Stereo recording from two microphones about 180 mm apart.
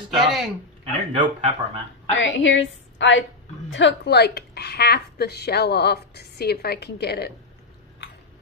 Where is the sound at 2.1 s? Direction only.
90° left.